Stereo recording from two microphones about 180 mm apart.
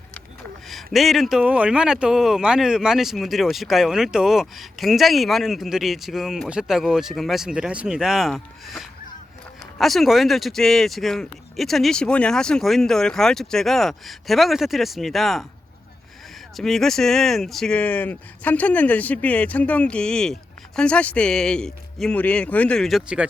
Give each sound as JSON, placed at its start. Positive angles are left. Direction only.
{"t": 0.7, "sound": "speech", "side_deg": 0}
{"t": 16.6, "sound": "speech", "side_deg": 0}